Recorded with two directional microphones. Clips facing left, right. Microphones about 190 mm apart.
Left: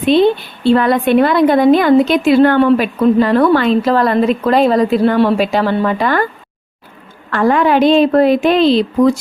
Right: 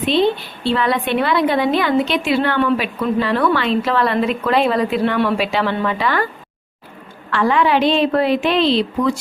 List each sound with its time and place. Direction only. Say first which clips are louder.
0.1 s a woman's voice: left 6 dB; 50° left (ahead or behind)
7.3 s a woman's voice: left 4 dB; 45° left (ahead or behind)